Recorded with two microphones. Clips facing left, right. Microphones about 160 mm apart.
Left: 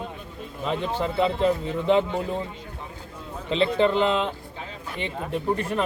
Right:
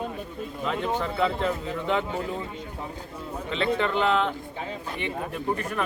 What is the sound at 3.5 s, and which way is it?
Speech, 25° left (ahead or behind).